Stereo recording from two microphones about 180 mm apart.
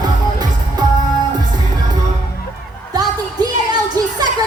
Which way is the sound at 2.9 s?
25° right (ahead or behind).